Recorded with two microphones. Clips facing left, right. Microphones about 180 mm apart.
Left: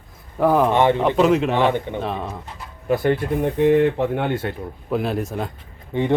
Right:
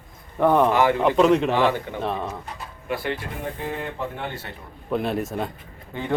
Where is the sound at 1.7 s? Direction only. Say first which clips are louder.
Left 3 dB; 20° left (ahead or behind).